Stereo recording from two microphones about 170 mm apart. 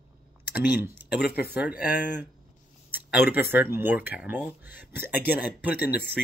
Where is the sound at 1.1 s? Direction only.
70° left (ahead or behind).